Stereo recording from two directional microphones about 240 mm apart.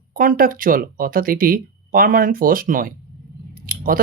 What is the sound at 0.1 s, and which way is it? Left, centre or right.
Speech, right.